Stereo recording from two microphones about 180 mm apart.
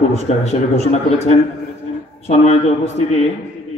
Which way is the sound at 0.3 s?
40° left (ahead or behind).